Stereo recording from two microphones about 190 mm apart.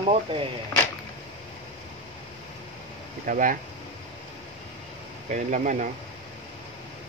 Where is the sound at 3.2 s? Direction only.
45° right (ahead or behind).